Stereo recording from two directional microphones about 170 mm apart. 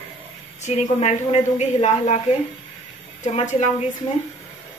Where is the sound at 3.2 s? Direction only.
45° left (ahead or behind).